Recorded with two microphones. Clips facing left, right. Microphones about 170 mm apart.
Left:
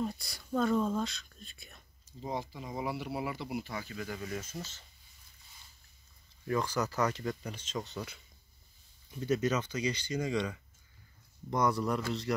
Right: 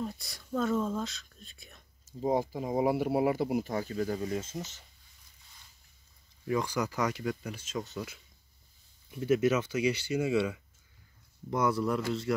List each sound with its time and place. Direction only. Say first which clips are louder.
0.0 s speech: left 1 dB; centre (ahead or behind)
2.0 s speech: right 9 dB; 45° right (ahead or behind); by 4.8 s 20° right (ahead or behind)
6.4 s speech: right 1 dB; 15° right (ahead or behind)